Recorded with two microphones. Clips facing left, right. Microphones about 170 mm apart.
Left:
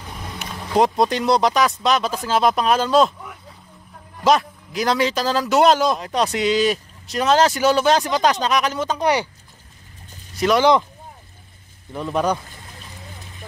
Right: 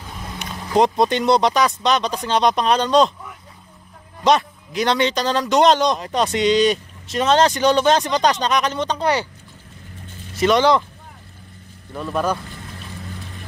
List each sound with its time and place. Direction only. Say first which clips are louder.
0.4 s speech: right 1 dB; centre (ahead or behind)
4.2 s speech: even; centre (ahead or behind)
10.3 s speech: right 1 dB; centre (ahead or behind)
11.9 s speech: left 1 dB; 15° left (ahead or behind)